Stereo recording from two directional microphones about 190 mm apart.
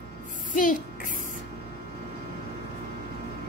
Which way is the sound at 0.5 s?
45° left (ahead or behind).